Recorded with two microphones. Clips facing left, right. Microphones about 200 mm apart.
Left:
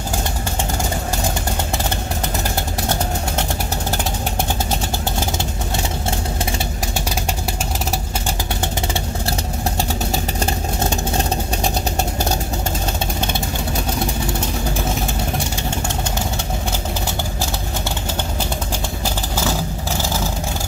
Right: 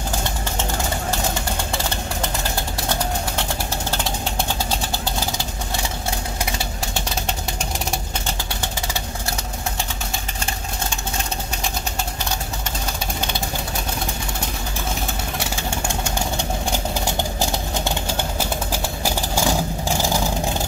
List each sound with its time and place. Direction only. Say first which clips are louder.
11.6 s vehicle: left 6 dB; 40° left (ahead or behind)
19.0 s vehicle: right 1 dB; 15° right (ahead or behind)